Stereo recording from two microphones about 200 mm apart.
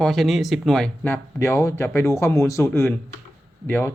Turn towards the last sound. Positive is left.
turn(degrees=10)  # may be behind; listen again after turning